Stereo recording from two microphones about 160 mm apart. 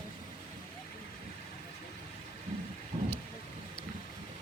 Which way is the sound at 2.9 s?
40° right (ahead or behind).